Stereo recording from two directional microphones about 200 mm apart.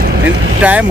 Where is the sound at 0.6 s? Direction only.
5° right (ahead or behind).